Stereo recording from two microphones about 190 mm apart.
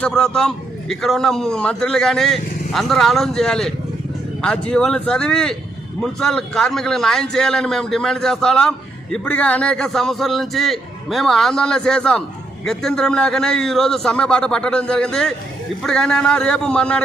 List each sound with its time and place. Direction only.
0.0 s a man's voice: 5° left (ahead or behind)